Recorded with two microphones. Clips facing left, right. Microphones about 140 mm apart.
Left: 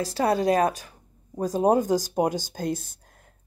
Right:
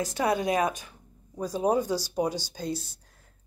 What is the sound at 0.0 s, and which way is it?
Speech, 35° left (ahead or behind).